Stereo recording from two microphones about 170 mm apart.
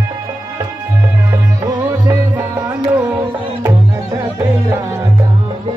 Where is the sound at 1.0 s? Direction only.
15° right (ahead or behind).